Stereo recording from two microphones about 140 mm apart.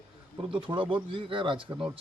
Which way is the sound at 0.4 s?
40° right (ahead or behind).